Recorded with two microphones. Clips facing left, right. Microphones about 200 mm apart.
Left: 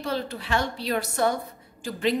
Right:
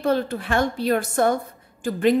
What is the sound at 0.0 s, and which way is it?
A woman's voice, 55° right (ahead or behind).